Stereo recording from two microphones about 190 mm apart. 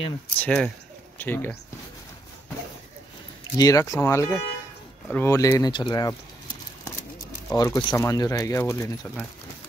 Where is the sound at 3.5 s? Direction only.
20° left (ahead or behind).